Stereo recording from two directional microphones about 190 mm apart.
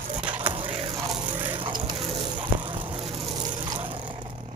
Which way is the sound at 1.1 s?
10° right (ahead or behind).